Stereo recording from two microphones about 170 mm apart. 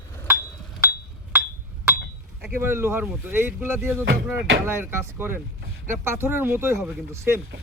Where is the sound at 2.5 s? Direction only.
15° right (ahead or behind).